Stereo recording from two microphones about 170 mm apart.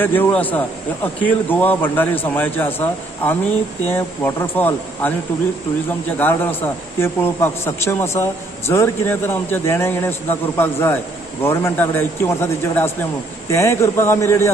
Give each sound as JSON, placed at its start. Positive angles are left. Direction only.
{"t": 0.0, "sound": "a man's voice", "side_deg": 10}
{"t": 6.1, "sound": "a man's voice", "side_deg": 10}